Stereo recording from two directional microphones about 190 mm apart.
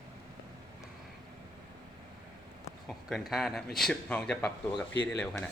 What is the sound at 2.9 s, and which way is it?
Speech, centre (ahead or behind).